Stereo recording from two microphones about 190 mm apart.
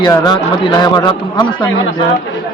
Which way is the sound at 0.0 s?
25° left (ahead or behind).